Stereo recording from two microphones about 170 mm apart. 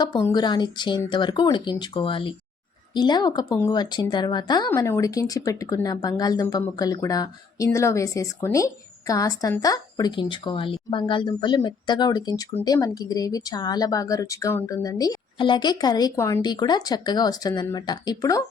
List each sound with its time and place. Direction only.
0.0 s speech: 25° left (ahead or behind)